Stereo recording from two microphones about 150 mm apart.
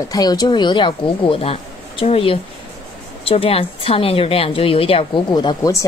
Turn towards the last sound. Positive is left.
turn(degrees=25)  # may be behind; listen again after turning